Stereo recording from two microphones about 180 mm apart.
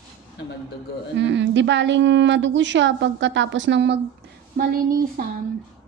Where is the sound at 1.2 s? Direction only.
80° right.